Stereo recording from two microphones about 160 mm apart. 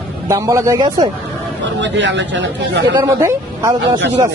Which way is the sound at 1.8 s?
90° right.